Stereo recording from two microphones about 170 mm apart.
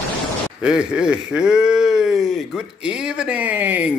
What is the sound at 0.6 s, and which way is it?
A man's voice, 5° right (ahead or behind).